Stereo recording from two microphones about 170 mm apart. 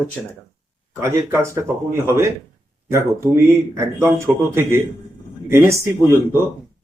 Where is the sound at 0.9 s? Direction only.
15° right (ahead or behind).